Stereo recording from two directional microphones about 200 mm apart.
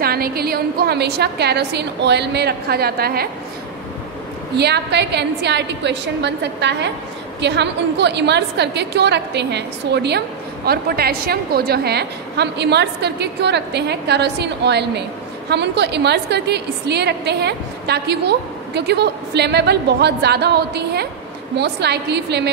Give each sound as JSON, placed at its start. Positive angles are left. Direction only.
{"t": 0.0, "sound": "a woman's voice", "side_deg": -50}
{"t": 4.6, "sound": "a woman's voice", "side_deg": -55}